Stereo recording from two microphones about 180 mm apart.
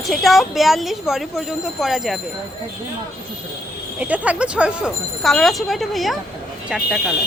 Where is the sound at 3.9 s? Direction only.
5° right (ahead or behind).